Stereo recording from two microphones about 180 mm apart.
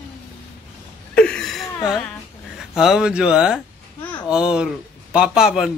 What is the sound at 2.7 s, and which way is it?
A man's voice, centre (ahead or behind).